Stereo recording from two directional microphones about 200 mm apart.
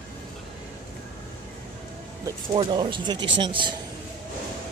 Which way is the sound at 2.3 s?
25° right (ahead or behind).